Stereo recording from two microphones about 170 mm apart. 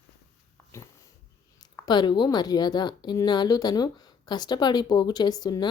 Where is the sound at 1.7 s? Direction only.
25° left (ahead or behind).